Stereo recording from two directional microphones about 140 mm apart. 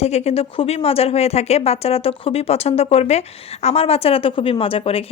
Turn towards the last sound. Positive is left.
turn(degrees=40)  # may be behind; listen again after turning